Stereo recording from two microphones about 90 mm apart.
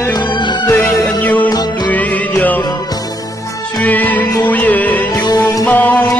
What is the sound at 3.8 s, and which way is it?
Music, 20° left (ahead or behind).